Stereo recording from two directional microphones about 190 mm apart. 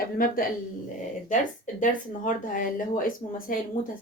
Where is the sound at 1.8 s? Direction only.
45° left (ahead or behind).